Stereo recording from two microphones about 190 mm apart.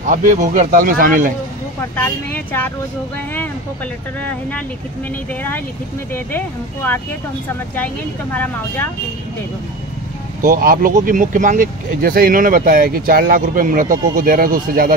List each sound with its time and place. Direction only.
0.0 s speech: 40° right (ahead or behind)
1.8 s speech: 10° left (ahead or behind)
4.2 s speech: 5° left (ahead or behind)
10.4 s speech: 50° right (ahead or behind)